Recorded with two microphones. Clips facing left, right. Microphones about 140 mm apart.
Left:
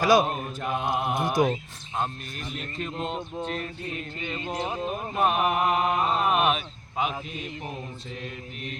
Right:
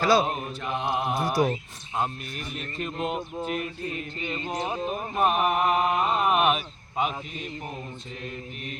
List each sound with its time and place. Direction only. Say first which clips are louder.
0.0 s mantra: left 1 dB; 15° left (ahead or behind)
0.3 s speech: left 1 dB; 5° right (ahead or behind)
1.1 s mantra: left 1 dB; 20° left (ahead or behind)
2.0 s speech: right 1 dB; 5° right (ahead or behind)